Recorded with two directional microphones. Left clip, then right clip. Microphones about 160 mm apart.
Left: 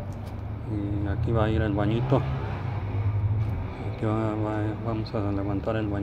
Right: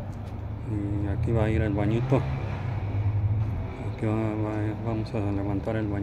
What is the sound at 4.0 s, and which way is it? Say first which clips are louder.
Speech: left 1 dB; 10° right (ahead or behind).